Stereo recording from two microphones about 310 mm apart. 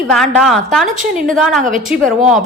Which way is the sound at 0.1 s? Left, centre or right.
Centre.